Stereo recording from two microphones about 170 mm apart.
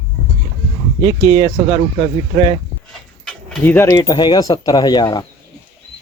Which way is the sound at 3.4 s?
10° left (ahead or behind).